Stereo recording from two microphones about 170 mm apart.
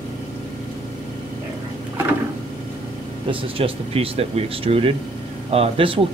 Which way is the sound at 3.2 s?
30° right (ahead or behind).